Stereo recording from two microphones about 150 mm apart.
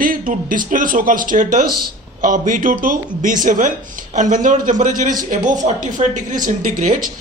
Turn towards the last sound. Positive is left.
turn(degrees=-60)  # may be behind; listen again after turning